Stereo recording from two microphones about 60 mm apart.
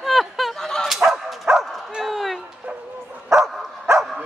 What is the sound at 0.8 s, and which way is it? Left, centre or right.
Dog, centre.